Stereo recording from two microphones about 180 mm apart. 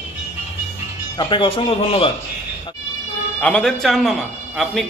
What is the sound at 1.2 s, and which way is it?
Speech, 25° left (ahead or behind).